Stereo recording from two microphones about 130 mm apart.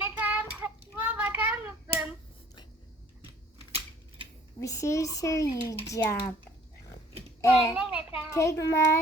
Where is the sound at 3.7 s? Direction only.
45° right (ahead or behind).